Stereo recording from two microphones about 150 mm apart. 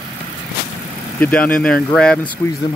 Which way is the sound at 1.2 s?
10° left (ahead or behind).